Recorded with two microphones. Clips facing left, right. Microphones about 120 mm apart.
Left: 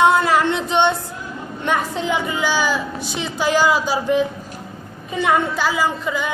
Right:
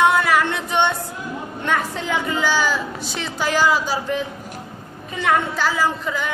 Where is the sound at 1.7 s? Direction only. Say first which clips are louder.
Left 2 dB; 15° left (ahead or behind).